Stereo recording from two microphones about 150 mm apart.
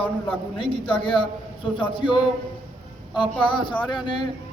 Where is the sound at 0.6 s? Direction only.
35° left (ahead or behind).